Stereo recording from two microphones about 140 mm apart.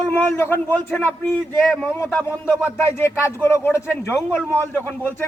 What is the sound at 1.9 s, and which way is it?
A man's voice, 15° left (ahead or behind).